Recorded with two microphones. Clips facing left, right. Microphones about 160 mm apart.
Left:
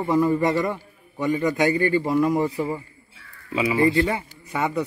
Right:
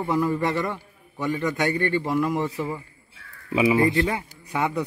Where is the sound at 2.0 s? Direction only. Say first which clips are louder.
Left 3 dB; 20° left (ahead or behind).